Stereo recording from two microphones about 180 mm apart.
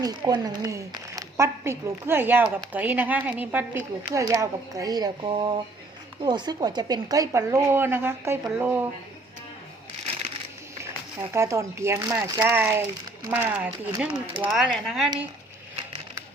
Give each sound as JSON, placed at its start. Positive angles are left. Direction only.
{"t": 0.0, "sound": "a woman's voice", "side_deg": -20}
{"t": 11.3, "sound": "a woman's voice", "side_deg": -15}
{"t": 14.5, "sound": "speech", "side_deg": 0}